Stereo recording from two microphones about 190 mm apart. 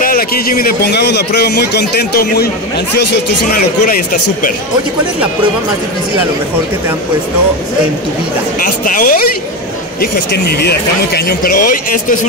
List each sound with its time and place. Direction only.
0.0 s a man's voice: 50° left (ahead or behind)
3.8 s speech: 45° left (ahead or behind)
8.5 s speech: 45° left (ahead or behind)